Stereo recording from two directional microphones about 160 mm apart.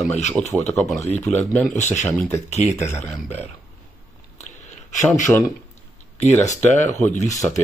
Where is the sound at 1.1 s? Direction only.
45° left (ahead or behind).